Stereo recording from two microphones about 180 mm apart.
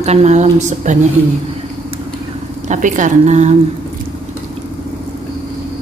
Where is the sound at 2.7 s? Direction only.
45° right (ahead or behind).